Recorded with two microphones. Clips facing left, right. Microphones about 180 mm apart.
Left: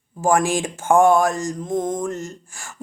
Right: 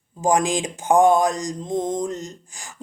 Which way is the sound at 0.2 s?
15° right (ahead or behind).